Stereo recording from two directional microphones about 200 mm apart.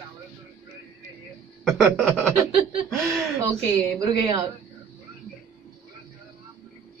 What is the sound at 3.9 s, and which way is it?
Speech, 15° right (ahead or behind).